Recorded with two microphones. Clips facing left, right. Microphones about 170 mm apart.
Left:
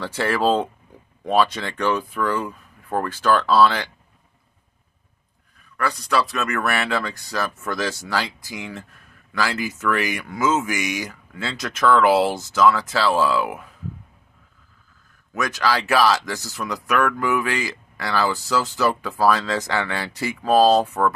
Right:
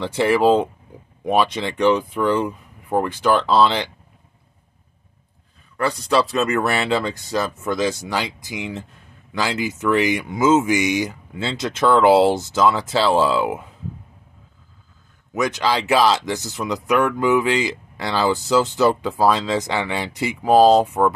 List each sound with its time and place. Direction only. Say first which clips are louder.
0.0 s speech: right 5 dB; 15° right (ahead or behind)
5.8 s speech: right 3 dB; 25° right (ahead or behind)
15.3 s speech: right 2 dB; 20° right (ahead or behind)